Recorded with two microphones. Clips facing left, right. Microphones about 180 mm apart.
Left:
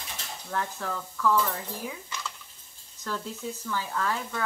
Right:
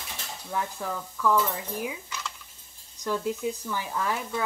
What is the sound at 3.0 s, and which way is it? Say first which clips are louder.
Speech: right 6 dB; 15° right (ahead or behind).